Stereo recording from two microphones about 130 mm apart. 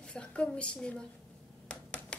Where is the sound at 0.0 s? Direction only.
10° left (ahead or behind).